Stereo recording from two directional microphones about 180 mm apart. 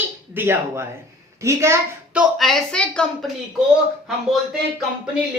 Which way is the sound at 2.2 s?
Centre (ahead or behind).